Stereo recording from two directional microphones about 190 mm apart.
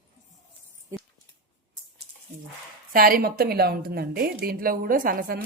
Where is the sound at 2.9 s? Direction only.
50° right (ahead or behind).